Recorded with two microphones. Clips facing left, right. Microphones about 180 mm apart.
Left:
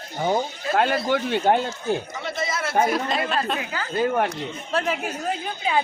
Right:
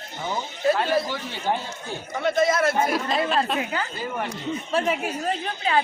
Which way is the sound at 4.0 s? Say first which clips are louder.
Left 8 dB; 60° left (ahead or behind).